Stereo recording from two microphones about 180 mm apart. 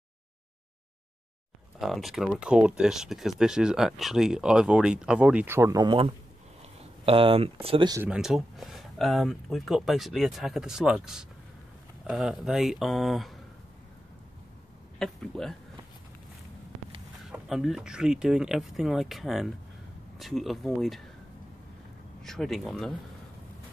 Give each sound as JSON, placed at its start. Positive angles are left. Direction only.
{"t": 1.8, "sound": "speech", "side_deg": 0}
{"t": 8.0, "sound": "speech", "side_deg": -5}
{"t": 15.0, "sound": "speech", "side_deg": 5}
{"t": 17.3, "sound": "speech", "side_deg": 0}
{"t": 22.2, "sound": "speech", "side_deg": 0}